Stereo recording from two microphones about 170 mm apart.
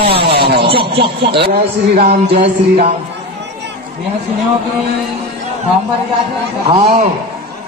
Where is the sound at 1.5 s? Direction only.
35° right (ahead or behind).